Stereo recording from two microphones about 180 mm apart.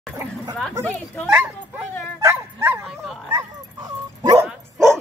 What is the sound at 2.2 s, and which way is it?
Dog, 10° right (ahead or behind).